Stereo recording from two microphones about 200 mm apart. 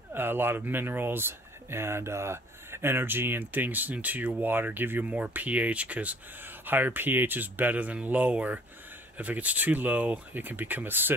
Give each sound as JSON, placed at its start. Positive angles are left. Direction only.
{"t": 0.1, "sound": "speech", "side_deg": -10}